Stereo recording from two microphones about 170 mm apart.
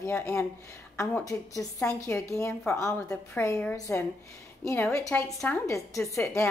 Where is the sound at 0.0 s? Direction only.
15° left (ahead or behind).